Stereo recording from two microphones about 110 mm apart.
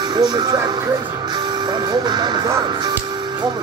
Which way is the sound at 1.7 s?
40° right (ahead or behind).